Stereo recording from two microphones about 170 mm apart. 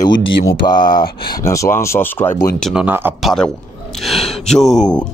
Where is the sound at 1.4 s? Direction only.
15° left (ahead or behind).